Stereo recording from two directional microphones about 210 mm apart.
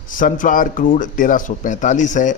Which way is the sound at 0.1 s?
40° left (ahead or behind).